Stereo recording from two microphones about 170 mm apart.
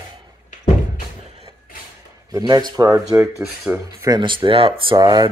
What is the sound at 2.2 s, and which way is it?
Speech, 20° right (ahead or behind).